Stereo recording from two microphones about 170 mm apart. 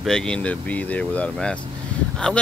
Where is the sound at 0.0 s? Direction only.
5° left (ahead or behind).